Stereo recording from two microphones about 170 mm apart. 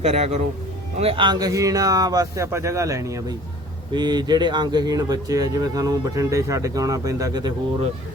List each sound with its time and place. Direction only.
0.0 s speech: 40° right (ahead or behind); by 7.5 s 20° right (ahead or behind)